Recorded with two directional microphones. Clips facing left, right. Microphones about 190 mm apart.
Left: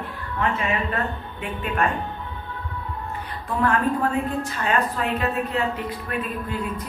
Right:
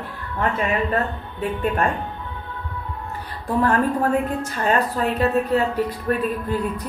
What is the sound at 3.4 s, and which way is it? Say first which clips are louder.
A woman's voice: right 3 dB; 40° right (ahead or behind).